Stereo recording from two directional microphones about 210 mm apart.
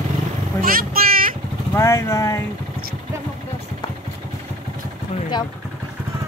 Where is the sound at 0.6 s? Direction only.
45° right (ahead or behind).